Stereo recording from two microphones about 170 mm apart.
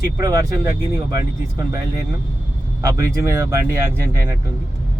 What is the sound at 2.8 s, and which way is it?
Speech, 15° right (ahead or behind).